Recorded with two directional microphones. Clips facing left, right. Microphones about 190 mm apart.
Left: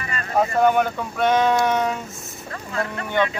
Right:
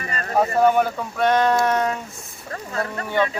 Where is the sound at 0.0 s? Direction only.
40° right (ahead or behind).